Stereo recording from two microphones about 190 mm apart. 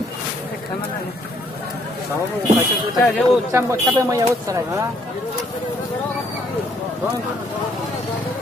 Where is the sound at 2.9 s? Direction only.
Centre (ahead or behind).